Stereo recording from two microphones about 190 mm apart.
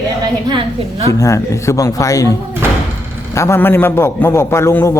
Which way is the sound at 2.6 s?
10° right (ahead or behind).